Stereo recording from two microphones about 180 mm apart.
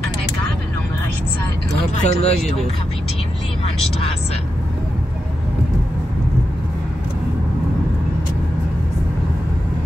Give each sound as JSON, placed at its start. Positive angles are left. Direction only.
{"t": 2.0, "sound": "speech", "side_deg": 40}